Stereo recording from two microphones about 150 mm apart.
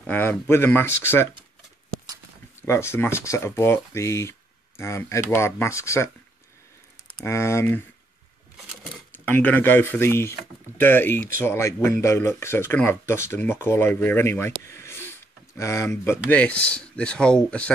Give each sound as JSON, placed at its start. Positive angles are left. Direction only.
{"t": 0.0, "sound": "speech", "side_deg": 15}
{"t": 2.6, "sound": "speech", "side_deg": 15}
{"t": 7.2, "sound": "speech", "side_deg": 20}
{"t": 8.8, "sound": "speech", "side_deg": 10}